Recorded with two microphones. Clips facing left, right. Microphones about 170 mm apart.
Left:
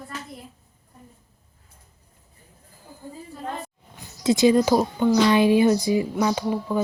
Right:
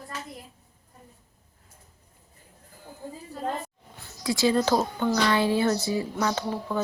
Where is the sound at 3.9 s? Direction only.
20° left (ahead or behind).